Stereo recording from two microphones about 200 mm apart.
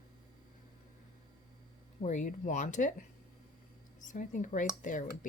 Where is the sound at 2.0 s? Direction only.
40° left (ahead or behind).